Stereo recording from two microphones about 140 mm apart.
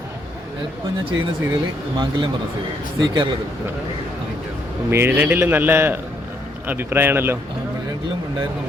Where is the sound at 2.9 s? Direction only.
35° right (ahead or behind).